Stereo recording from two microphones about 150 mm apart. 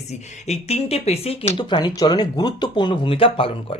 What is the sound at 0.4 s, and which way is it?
Speech, 45° left (ahead or behind).